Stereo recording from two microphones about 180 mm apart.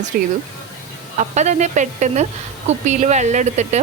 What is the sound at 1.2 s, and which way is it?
Speech, 40° right (ahead or behind).